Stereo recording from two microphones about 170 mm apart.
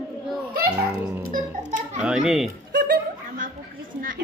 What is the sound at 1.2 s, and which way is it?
Speech, 50° right (ahead or behind).